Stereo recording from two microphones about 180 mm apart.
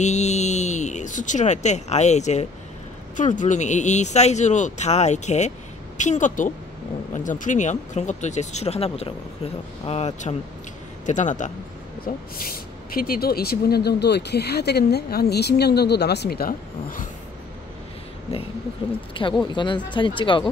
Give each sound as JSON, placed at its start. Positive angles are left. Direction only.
{"t": 0.0, "sound": "a woman's voice", "side_deg": 40}
{"t": 12.4, "sound": "speech", "side_deg": 55}
{"t": 18.8, "sound": "speech", "side_deg": 25}